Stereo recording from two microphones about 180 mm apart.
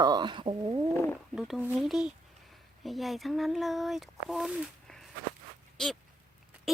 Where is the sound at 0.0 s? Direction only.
25° right (ahead or behind).